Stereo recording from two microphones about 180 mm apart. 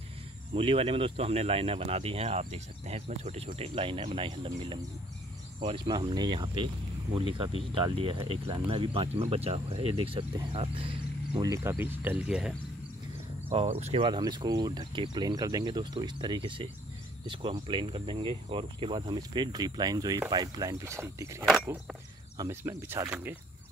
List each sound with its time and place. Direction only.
0.6 s speech: 30° right (ahead or behind); by 12.5 s 5° right (ahead or behind)
13.5 s speech: 35° right (ahead or behind); by 23.3 s 10° right (ahead or behind)